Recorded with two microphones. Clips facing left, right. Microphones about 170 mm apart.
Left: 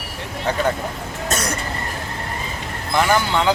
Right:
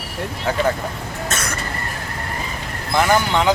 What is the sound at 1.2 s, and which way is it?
Vehicle, 40° left (ahead or behind).